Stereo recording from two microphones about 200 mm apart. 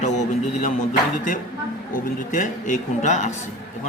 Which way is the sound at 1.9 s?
45° left (ahead or behind).